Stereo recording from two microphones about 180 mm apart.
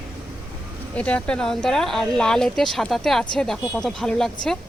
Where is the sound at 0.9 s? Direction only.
5° left (ahead or behind).